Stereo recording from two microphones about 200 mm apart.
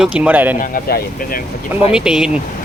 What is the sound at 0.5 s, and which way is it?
Speech, 45° left (ahead or behind).